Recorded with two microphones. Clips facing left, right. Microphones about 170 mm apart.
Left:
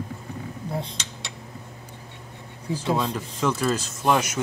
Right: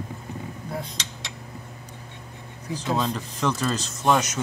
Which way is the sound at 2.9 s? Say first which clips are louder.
Even; 10° left (ahead or behind).